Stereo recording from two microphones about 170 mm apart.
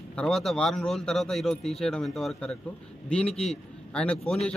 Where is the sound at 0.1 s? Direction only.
5° left (ahead or behind).